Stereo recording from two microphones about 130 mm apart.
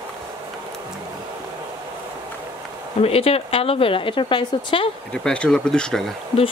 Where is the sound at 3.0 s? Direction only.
50° left (ahead or behind).